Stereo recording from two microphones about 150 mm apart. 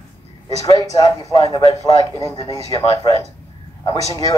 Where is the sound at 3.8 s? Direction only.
25° left (ahead or behind).